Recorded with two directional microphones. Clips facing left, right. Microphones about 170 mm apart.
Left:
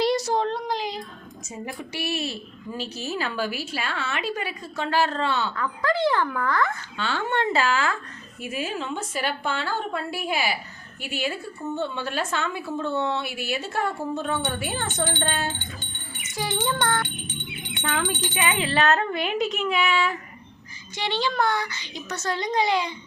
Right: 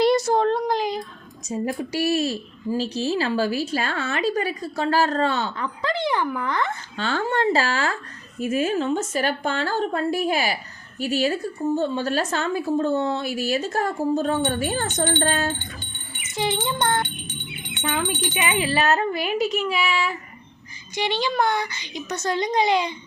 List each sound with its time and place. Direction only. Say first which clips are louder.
0.0 s a sound: right 4 dB; 55° right (ahead or behind)
1.5 s a woman's voice: right 9 dB; 40° right (ahead or behind)
5.5 s a woman's voice: left 2 dB; 20° right (ahead or behind)
6.9 s a woman's voice: right 3 dB; 40° right (ahead or behind)
16.3 s a woman's voice: right 2 dB; 25° right (ahead or behind); by 20.1 s 5° right (ahead or behind)
20.9 s a woman's voice: right 2 dB; 15° right (ahead or behind)